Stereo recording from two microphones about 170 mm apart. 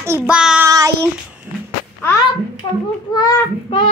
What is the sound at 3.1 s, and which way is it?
Speech, 25° left (ahead or behind).